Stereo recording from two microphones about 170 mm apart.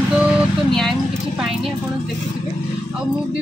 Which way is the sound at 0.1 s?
Centre (ahead or behind).